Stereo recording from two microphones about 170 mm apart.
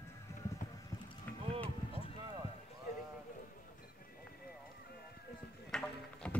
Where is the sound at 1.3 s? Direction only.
10° left (ahead or behind).